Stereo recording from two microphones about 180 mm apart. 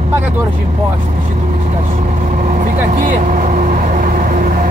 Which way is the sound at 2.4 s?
45° right (ahead or behind).